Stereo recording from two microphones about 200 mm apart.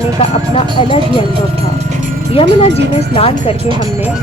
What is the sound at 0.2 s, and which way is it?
Speech, 25° left (ahead or behind).